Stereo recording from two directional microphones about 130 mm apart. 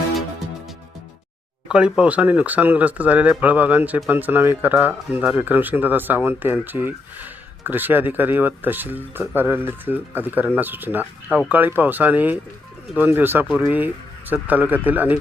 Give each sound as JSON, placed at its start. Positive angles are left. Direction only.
{"t": 1.6, "sound": "speech", "side_deg": -10}